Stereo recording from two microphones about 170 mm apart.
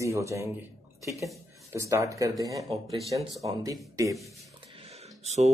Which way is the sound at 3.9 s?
20° right (ahead or behind).